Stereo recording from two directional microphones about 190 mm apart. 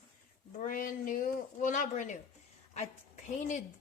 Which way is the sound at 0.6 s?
50° left (ahead or behind).